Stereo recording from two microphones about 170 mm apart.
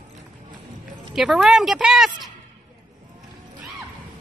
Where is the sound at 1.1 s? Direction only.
Centre (ahead or behind).